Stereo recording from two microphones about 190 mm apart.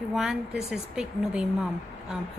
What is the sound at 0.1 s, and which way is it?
A woman's voice, centre (ahead or behind).